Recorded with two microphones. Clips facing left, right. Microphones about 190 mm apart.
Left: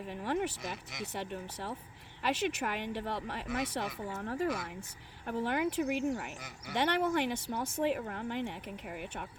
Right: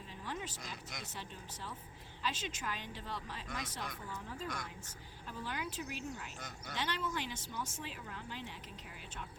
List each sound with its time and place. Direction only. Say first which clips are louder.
0.1 s speech: left 11 dB; 65° left (ahead or behind)
4.4 s speech: left 9 dB; 5° left (ahead or behind)
5.2 s speech: left 11 dB; 65° left (ahead or behind)